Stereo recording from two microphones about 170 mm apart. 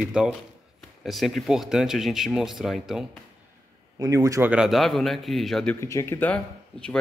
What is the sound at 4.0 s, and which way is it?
Speech, 20° right (ahead or behind).